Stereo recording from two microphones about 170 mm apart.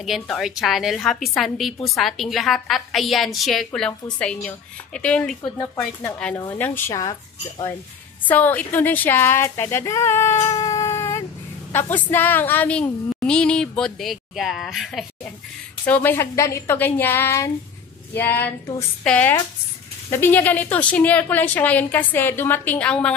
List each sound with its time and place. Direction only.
0.0 s a woman's voice: centre (ahead or behind); by 7.7 s 20° left (ahead or behind)
8.3 s a woman's voice: 10° left (ahead or behind)
15.8 s a woman's voice: 10° left (ahead or behind)